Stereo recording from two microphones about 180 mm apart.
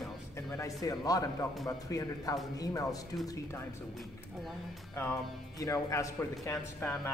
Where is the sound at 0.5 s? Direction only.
20° left (ahead or behind).